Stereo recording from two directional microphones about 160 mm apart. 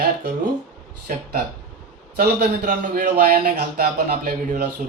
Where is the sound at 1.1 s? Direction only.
65° right (ahead or behind).